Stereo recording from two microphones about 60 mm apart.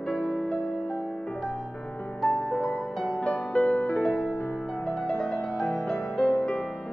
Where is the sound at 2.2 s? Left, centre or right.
Centre.